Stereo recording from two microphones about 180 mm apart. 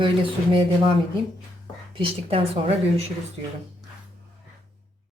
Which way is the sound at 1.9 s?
30° right (ahead or behind).